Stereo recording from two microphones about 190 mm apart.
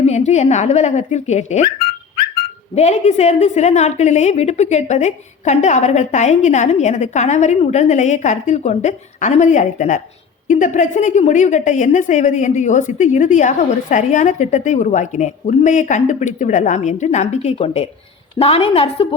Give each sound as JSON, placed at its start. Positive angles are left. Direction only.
{"t": 0.0, "sound": "a woman's voice", "side_deg": 35}
{"t": 2.7, "sound": "a woman's voice", "side_deg": 35}